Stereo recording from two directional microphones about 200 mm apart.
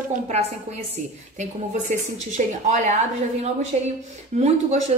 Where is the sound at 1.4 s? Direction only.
35° right (ahead or behind).